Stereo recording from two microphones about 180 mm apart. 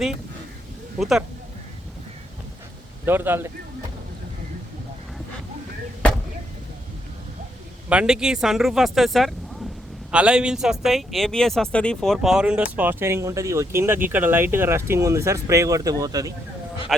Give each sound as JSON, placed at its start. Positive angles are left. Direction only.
{"t": 0.9, "sound": "speech", "side_deg": 0}
{"t": 3.1, "sound": "speech", "side_deg": -10}
{"t": 7.9, "sound": "speech", "side_deg": -5}